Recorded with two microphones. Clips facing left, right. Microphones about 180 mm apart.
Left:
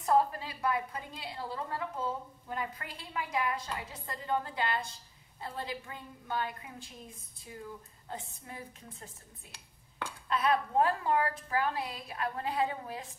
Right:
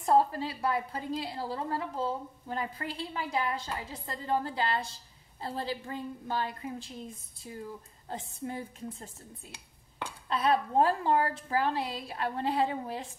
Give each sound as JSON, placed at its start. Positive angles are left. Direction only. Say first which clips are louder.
{"t": 0.0, "sound": "a woman's voice", "louder": "right 3 dB", "side_deg": -30}
{"t": 8.1, "sound": "a woman's voice", "louder": "right 7 dB", "side_deg": -30}
{"t": 10.3, "sound": "a woman's voice", "louder": "right 2 dB", "side_deg": -30}